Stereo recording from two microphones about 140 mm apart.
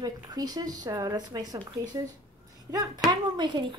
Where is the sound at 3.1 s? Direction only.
35° right (ahead or behind).